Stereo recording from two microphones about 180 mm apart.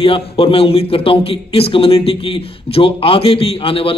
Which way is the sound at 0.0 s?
30° left (ahead or behind).